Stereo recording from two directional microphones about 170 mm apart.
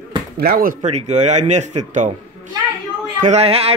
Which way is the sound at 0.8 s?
40° right (ahead or behind).